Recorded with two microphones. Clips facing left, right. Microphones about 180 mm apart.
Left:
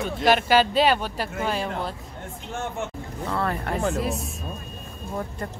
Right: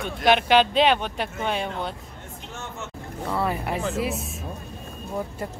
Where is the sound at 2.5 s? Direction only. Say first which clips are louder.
Left 7 dB; 55° left (ahead or behind).